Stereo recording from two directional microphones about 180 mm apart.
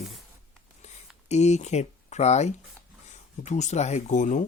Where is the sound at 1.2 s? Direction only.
40° left (ahead or behind).